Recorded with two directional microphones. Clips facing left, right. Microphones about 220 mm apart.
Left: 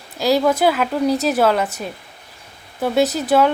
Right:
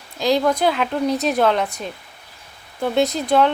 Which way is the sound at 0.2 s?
5° left (ahead or behind).